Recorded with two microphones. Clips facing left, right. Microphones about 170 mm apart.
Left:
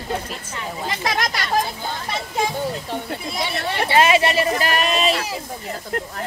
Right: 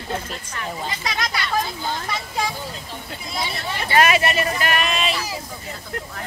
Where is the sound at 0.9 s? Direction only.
50° left (ahead or behind).